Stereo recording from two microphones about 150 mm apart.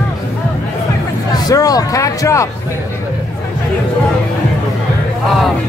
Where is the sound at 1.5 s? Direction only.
25° left (ahead or behind).